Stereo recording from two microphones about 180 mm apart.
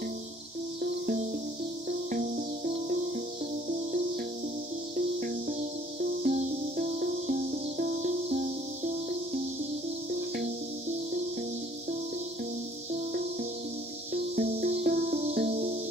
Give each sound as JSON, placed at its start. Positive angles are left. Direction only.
{"t": 2.0, "sound": "music", "side_deg": -50}
{"t": 6.2, "sound": "music", "side_deg": -45}
{"t": 14.1, "sound": "music", "side_deg": -60}
{"t": 15.1, "sound": "music", "side_deg": -45}